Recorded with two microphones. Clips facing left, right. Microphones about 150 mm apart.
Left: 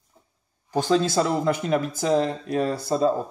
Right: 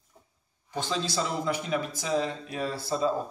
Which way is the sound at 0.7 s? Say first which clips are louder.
Left 9 dB; 50° left (ahead or behind).